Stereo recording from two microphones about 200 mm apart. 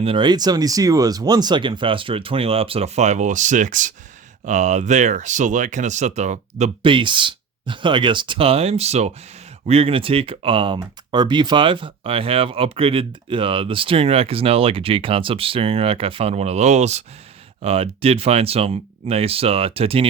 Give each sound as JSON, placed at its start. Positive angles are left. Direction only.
{"t": 0.0, "sound": "speech", "side_deg": -25}